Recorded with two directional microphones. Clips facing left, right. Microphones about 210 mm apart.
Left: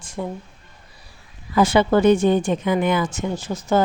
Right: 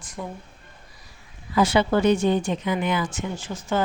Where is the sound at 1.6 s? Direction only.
50° left (ahead or behind).